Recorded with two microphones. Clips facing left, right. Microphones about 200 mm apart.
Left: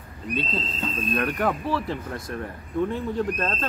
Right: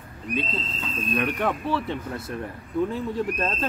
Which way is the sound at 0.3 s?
Centre (ahead or behind).